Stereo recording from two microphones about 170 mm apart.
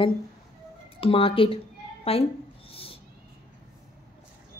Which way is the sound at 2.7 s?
35° left (ahead or behind).